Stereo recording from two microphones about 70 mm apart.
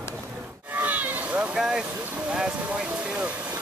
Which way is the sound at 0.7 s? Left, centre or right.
Right.